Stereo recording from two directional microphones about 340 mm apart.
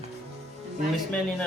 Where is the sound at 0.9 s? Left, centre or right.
Centre.